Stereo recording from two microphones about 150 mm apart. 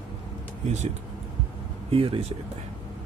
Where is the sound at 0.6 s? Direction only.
50° right (ahead or behind).